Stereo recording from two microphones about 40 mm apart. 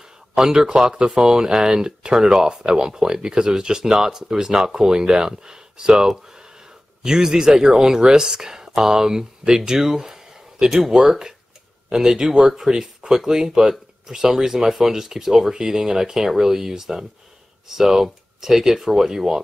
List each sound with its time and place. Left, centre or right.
0.4 s speech: centre
2.1 s speech: centre
2.4 s speech: centre